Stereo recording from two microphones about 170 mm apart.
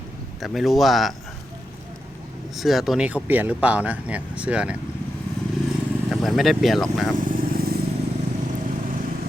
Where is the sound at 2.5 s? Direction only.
Centre (ahead or behind).